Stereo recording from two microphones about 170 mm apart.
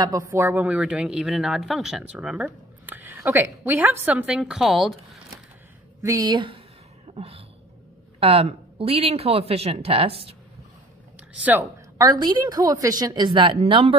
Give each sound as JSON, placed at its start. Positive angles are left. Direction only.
{"t": 0.0, "sound": "speech", "side_deg": -20}
{"t": 6.0, "sound": "a woman's voice", "side_deg": -20}
{"t": 7.2, "sound": "a sound", "side_deg": -35}
{"t": 8.2, "sound": "speech", "side_deg": -35}
{"t": 11.1, "sound": "a sound", "side_deg": -10}
{"t": 12.1, "sound": "a woman's voice", "side_deg": -25}